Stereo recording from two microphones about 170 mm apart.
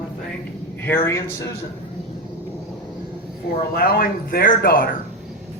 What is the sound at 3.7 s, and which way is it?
Speech, 60° left (ahead or behind).